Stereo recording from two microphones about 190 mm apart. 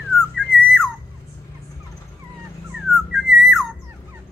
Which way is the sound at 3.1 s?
Centre (ahead or behind).